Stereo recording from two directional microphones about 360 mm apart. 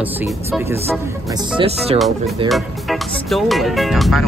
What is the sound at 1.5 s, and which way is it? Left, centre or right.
Speech, centre.